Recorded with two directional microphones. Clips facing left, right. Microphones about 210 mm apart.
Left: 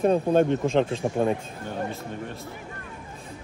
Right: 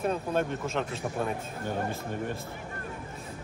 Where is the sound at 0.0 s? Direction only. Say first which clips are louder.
Left 9 dB; 30° left (ahead or behind).